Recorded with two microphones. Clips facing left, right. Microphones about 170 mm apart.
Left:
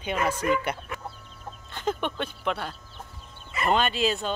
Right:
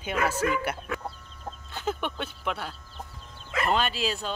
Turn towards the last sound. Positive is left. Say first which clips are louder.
# left 4 dB
turn(degrees=0)  # may be behind; listen again after turning